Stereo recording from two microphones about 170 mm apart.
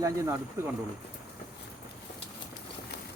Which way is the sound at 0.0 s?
15° right (ahead or behind).